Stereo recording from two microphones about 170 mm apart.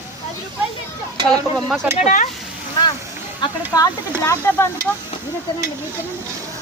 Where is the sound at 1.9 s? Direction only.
45° left (ahead or behind).